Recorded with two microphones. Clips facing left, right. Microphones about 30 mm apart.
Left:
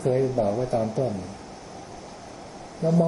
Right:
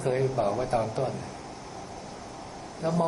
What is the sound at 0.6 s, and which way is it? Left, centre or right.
Speech, right.